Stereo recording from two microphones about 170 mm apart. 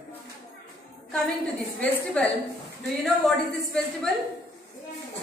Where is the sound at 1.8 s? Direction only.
5° left (ahead or behind).